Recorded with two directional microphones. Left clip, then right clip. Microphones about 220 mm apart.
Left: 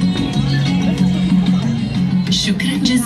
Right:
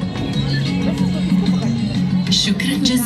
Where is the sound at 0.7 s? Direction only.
25° left (ahead or behind).